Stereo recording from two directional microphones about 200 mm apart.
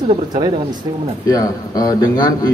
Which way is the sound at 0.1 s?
20° right (ahead or behind).